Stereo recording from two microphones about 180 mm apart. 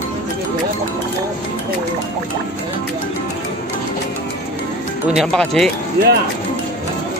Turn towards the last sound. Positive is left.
turn(degrees=-65)  # may be behind; listen again after turning